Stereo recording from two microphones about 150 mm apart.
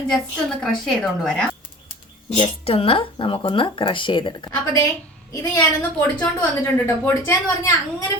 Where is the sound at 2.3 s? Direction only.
40° left (ahead or behind).